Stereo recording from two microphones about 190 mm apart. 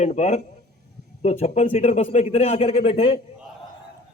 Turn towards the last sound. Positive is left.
turn(degrees=30)  # may be behind; listen again after turning